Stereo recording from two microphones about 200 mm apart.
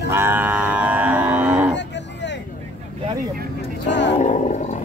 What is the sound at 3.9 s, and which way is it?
Vehicle, 60° left (ahead or behind).